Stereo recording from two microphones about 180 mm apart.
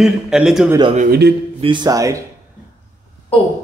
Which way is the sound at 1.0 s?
60° right (ahead or behind).